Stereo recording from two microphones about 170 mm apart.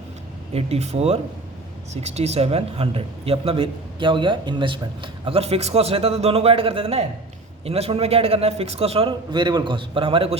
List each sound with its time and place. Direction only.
0.5 s speech: 40° right (ahead or behind)